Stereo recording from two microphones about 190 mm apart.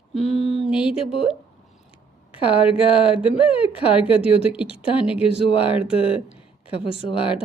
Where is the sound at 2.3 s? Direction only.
25° left (ahead or behind).